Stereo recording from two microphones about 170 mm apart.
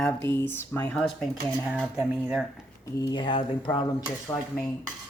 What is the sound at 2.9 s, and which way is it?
Speech, 25° left (ahead or behind).